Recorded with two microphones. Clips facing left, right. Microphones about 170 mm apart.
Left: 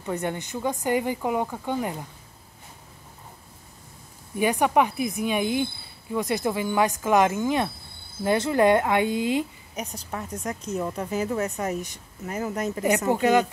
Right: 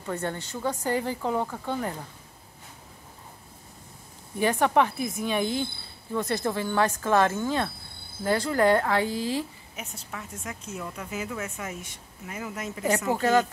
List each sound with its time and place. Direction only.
0.0 s speech: 15° left (ahead or behind)
4.4 s a woman's voice: 15° left (ahead or behind)
9.8 s speech: 40° left (ahead or behind)
13.1 s speech: 15° left (ahead or behind)